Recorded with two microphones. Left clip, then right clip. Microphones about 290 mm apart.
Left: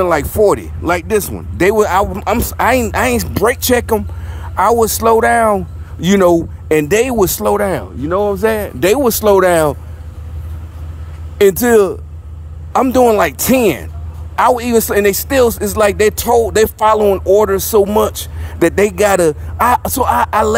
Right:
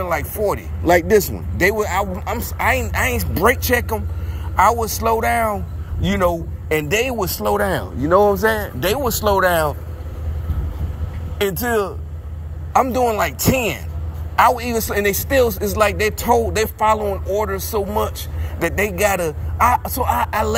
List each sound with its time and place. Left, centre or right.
0.1 s speech: left
0.8 s speech: centre
1.3 s speech: centre
7.6 s speech: left
11.3 s speech: left